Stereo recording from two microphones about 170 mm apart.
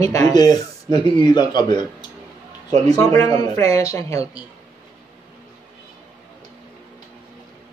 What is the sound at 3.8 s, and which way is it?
Speech, 20° left (ahead or behind).